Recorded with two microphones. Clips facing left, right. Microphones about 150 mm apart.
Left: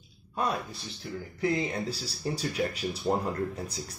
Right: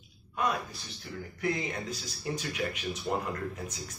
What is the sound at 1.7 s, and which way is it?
Speech, 35° left (ahead or behind).